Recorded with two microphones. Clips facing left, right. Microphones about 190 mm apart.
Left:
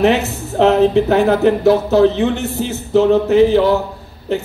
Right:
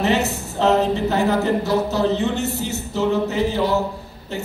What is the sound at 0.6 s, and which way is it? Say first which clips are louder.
Speech: left 6 dB; 65° left (ahead or behind).